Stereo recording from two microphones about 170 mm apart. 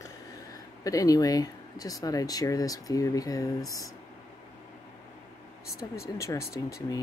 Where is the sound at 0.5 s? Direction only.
20° left (ahead or behind).